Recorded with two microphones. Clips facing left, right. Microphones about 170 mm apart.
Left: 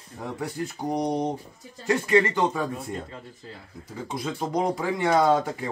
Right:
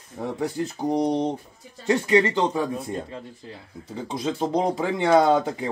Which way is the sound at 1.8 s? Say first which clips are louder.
Right 2 dB; 25° right (ahead or behind).